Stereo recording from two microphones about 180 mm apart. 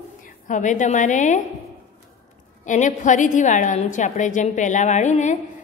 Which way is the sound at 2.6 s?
45° left (ahead or behind).